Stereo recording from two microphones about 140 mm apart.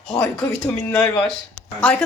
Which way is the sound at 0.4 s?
15° left (ahead or behind).